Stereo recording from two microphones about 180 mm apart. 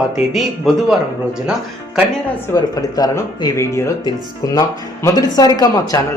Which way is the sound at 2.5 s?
20° left (ahead or behind).